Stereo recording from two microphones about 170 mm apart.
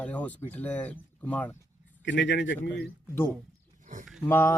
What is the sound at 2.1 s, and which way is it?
Speech, 90° left.